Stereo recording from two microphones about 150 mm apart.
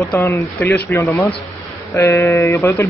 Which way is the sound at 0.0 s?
15° left (ahead or behind).